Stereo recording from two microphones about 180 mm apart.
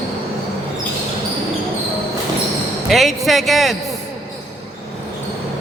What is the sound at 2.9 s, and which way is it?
Speech, centre (ahead or behind).